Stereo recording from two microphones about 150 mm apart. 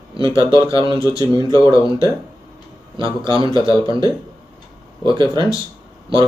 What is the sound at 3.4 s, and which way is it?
Speech, 25° left (ahead or behind).